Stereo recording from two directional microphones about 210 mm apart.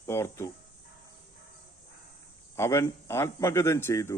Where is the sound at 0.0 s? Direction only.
10° left (ahead or behind).